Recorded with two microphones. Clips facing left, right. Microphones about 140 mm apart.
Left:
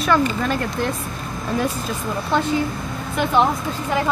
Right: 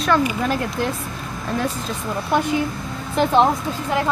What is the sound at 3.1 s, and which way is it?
Speech, 30° right (ahead or behind).